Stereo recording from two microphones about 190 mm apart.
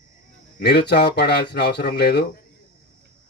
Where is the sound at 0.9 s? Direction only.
60° left (ahead or behind).